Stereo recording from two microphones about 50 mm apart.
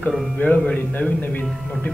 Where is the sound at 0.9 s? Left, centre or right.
Left.